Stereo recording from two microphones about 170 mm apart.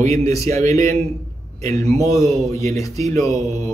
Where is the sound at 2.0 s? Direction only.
20° left (ahead or behind).